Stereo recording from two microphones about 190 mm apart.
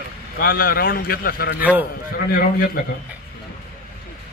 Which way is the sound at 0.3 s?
50° left (ahead or behind).